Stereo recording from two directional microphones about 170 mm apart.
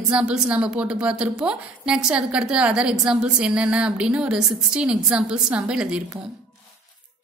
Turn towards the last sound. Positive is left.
turn(degrees=-5)  # may be behind; listen again after turning